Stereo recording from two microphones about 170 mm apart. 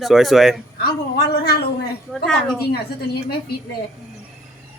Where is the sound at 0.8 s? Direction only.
65° left (ahead or behind).